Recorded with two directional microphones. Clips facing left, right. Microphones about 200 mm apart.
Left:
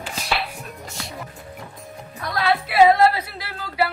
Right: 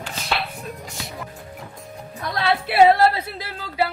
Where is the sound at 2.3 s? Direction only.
30° right (ahead or behind).